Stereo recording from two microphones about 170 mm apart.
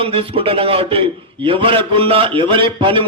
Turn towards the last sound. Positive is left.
turn(degrees=-30)  # may be behind; listen again after turning